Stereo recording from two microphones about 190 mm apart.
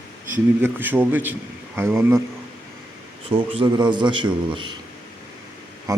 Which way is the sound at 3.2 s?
30° right (ahead or behind).